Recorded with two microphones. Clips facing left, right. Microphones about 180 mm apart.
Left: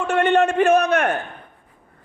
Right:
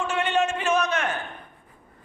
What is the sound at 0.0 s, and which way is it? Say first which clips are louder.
A man's voice: left 7 dB; 60° left (ahead or behind).